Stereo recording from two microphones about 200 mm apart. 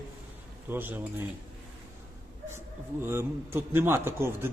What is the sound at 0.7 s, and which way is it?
Speech, 10° right (ahead or behind).